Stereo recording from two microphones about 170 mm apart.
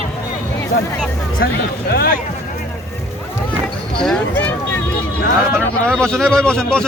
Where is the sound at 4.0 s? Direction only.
5° left (ahead or behind).